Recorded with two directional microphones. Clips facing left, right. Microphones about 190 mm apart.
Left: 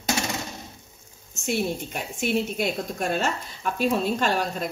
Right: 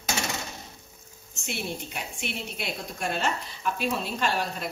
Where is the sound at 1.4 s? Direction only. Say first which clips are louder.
Left 8 dB; 45° left (ahead or behind).